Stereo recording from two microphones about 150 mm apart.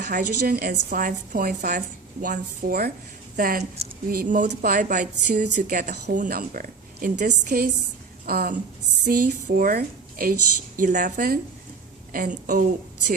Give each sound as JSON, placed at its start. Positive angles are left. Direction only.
{"t": 0.1, "sound": "a woman's voice", "side_deg": -85}
{"t": 2.2, "sound": "a woman's voice", "side_deg": -65}
{"t": 3.8, "sound": "speech", "side_deg": -45}
{"t": 4.1, "sound": "a woman's voice", "side_deg": -65}
{"t": 8.3, "sound": "a woman's voice", "side_deg": -90}
{"t": 9.0, "sound": "a woman's voice", "side_deg": -70}
{"t": 10.8, "sound": "a woman's voice", "side_deg": -60}